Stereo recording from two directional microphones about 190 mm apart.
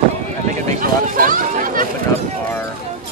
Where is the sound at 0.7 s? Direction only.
45° right (ahead or behind).